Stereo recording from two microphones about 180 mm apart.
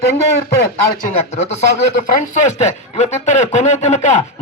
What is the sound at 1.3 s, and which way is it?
A man's voice, 35° left (ahead or behind).